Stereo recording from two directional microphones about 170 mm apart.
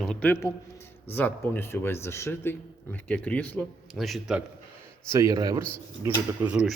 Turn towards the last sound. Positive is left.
turn(degrees=-5)  # may be behind; listen again after turning